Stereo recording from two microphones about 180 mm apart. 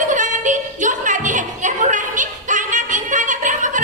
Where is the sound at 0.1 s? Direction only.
45° right (ahead or behind).